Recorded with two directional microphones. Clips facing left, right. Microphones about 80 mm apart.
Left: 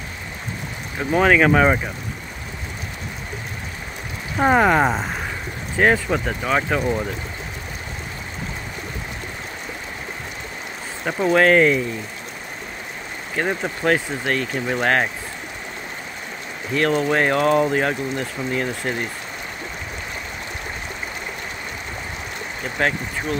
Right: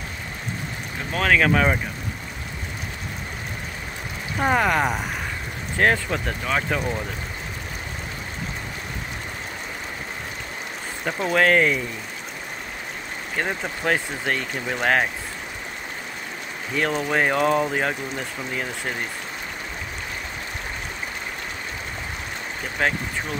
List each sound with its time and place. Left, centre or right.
1.1 s speech: centre
4.4 s speech: centre
5.8 s speech: centre
11.1 s speech: centre
13.4 s speech: centre
16.7 s speech: centre
22.8 s speech: centre